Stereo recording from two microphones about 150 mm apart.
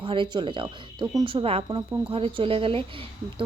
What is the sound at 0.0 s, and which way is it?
Speech, 35° right (ahead or behind).